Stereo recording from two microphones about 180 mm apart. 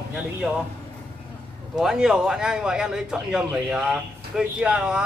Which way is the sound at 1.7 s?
5° right (ahead or behind).